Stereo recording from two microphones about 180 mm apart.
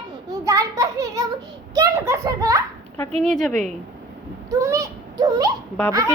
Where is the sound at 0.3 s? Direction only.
20° right (ahead or behind).